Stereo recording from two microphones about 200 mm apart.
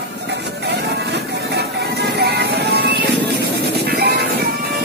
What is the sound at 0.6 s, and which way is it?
Music, 55° right (ahead or behind).